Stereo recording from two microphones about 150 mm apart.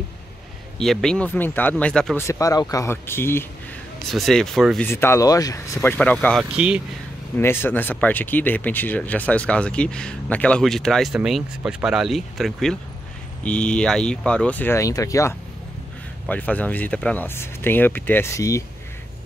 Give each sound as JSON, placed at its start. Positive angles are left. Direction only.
{"t": 0.7, "sound": "speech", "side_deg": 5}
{"t": 2.1, "sound": "speech", "side_deg": 20}
{"t": 4.1, "sound": "speech", "side_deg": 0}
{"t": 4.8, "sound": "speech", "side_deg": 15}
{"t": 5.9, "sound": "speech", "side_deg": 10}
{"t": 6.5, "sound": "speech", "side_deg": -5}
{"t": 7.3, "sound": "speech", "side_deg": 15}
{"t": 16.3, "sound": "speech", "side_deg": 10}